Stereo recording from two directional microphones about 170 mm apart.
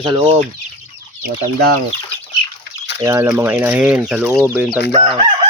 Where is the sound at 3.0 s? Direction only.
20° right (ahead or behind).